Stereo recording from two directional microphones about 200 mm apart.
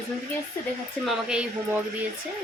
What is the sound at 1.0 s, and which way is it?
Speech, 5° right (ahead or behind).